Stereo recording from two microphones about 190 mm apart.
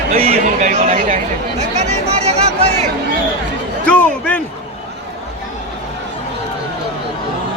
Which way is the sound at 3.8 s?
5° left (ahead or behind).